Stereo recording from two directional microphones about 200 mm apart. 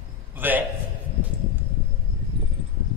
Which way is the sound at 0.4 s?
10° right (ahead or behind).